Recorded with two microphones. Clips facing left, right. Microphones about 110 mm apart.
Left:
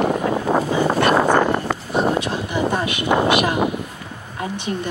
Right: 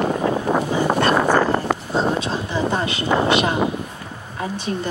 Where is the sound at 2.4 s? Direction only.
15° left (ahead or behind).